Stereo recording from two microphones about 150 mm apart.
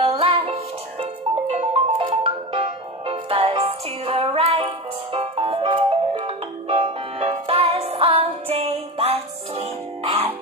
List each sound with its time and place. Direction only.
0.0 s music: 40° right (ahead or behind)
1.5 s marimba: 40° right (ahead or behind)
2.0 s music: 35° right (ahead or behind)